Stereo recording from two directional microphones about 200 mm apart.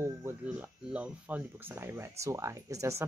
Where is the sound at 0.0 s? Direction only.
10° right (ahead or behind).